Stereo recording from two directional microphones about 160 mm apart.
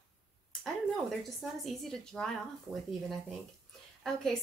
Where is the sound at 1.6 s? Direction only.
5° left (ahead or behind).